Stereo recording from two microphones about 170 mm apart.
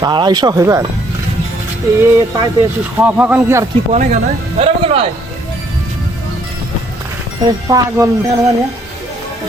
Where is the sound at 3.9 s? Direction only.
40° right (ahead or behind).